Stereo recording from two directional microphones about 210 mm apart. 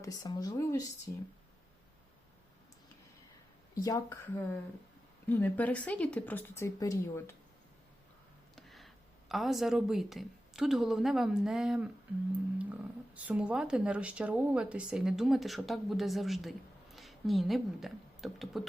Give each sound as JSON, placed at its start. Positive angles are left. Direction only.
{"t": 0.0, "sound": "speech", "side_deg": 15}
{"t": 3.8, "sound": "speech", "side_deg": 15}
{"t": 8.5, "sound": "a sound", "side_deg": 0}
{"t": 9.3, "sound": "speech", "side_deg": 0}
{"t": 13.1, "sound": "speech", "side_deg": -5}